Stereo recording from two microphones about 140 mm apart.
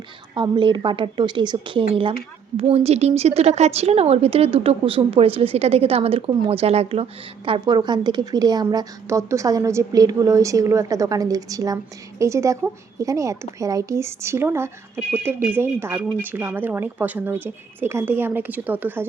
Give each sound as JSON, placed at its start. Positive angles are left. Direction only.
{"t": 0.3, "sound": "a woman's voice", "side_deg": -35}